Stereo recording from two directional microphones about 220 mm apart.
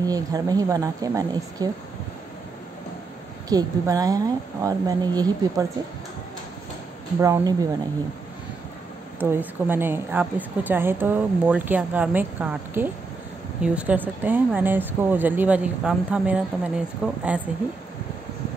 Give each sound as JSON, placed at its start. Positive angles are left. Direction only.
{"t": 0.0, "sound": "speech", "side_deg": -15}
{"t": 3.4, "sound": "speech", "side_deg": -15}
{"t": 7.2, "sound": "speech", "side_deg": -15}
{"t": 9.2, "sound": "speech", "side_deg": -10}